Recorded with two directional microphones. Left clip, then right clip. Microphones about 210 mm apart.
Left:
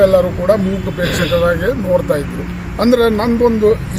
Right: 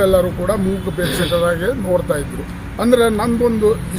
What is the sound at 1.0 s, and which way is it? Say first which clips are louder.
Speech: left 4 dB; 25° right (ahead or behind).